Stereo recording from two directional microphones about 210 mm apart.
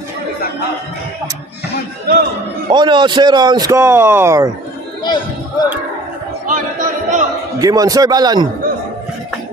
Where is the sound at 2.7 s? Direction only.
20° right (ahead or behind).